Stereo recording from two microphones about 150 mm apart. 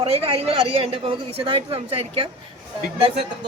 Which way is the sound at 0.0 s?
40° right (ahead or behind).